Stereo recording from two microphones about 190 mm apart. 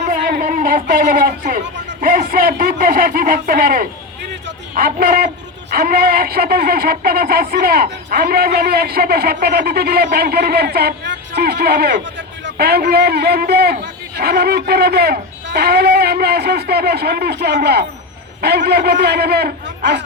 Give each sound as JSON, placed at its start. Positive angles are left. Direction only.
{"t": 0.1, "sound": "a man's voice", "side_deg": -50}